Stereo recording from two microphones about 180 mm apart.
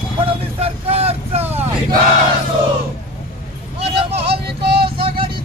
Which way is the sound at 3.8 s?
35° right (ahead or behind).